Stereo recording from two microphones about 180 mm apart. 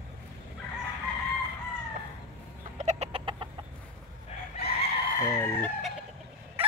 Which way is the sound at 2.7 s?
35° right (ahead or behind).